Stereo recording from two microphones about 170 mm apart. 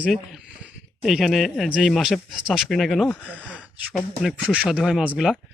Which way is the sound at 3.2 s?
5° right (ahead or behind).